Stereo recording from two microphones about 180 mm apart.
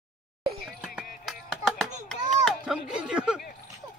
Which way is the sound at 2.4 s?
5° right (ahead or behind).